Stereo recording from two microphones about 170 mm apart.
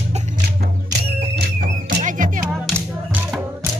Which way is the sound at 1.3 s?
90° right.